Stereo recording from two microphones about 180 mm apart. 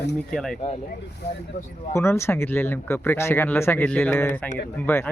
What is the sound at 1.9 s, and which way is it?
Speech, 15° left (ahead or behind).